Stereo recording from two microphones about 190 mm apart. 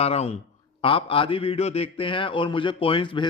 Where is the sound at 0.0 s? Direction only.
35° left (ahead or behind).